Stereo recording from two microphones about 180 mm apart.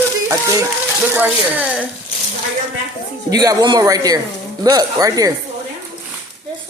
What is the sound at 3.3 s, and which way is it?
A man's voice, 20° right (ahead or behind).